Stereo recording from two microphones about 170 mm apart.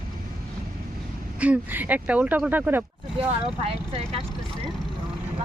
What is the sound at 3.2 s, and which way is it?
Speech, 35° right (ahead or behind).